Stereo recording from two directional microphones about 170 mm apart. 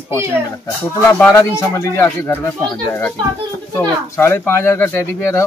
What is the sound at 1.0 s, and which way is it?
Speech, 15° left (ahead or behind).